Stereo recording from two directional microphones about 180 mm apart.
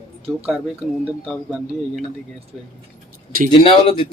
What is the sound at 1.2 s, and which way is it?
Speech, centre (ahead or behind).